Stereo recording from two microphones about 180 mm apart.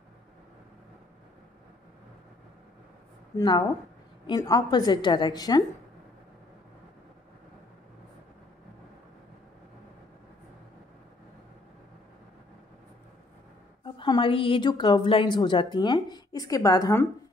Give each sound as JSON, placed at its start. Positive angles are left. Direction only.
{"t": 3.3, "sound": "a woman's voice", "side_deg": 25}
{"t": 13.8, "sound": "a woman's voice", "side_deg": 25}